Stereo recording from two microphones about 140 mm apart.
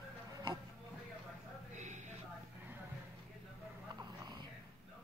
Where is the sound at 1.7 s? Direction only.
60° right (ahead or behind).